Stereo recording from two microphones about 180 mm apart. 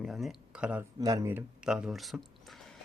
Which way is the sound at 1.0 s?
20° right (ahead or behind).